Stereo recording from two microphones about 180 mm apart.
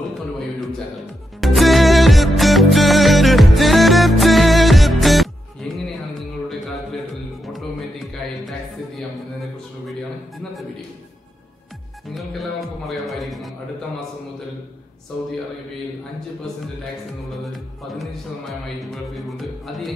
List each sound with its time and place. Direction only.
1.4 s music: centre (ahead or behind)
12.1 s music: centre (ahead or behind)
17.3 s music: centre (ahead or behind)